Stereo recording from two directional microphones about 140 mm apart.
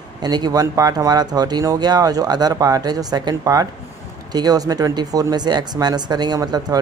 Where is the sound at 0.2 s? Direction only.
30° right (ahead or behind).